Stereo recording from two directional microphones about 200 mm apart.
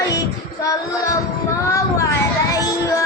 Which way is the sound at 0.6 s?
15° left (ahead or behind).